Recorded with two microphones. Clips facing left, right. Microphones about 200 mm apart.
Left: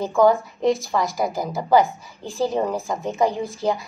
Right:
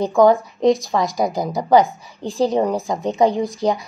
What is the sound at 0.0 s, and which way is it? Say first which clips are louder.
A woman's voice: right 3 dB; 15° right (ahead or behind).